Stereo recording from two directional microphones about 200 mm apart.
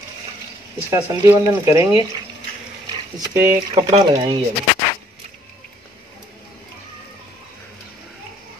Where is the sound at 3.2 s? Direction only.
20° right (ahead or behind).